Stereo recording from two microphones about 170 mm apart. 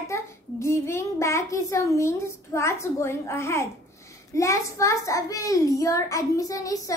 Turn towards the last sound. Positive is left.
turn(degrees=20)  # may be behind; listen again after turning